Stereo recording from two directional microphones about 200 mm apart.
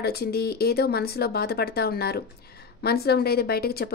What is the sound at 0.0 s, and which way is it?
Speech, 50° left (ahead or behind).